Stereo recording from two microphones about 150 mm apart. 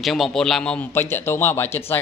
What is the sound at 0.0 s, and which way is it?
A man's voice, centre (ahead or behind).